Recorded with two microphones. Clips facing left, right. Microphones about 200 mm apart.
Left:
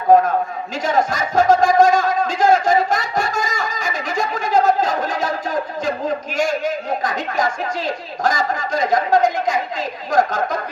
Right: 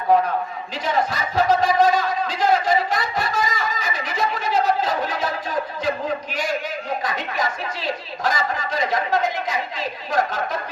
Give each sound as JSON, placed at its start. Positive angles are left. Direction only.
{"t": 0.1, "sound": "speech", "side_deg": 45}
{"t": 0.9, "sound": "a sound", "side_deg": 45}
{"t": 6.3, "sound": "speech", "side_deg": 45}